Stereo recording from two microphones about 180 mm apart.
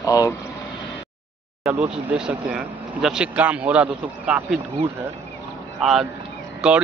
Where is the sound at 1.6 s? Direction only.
5° right (ahead or behind).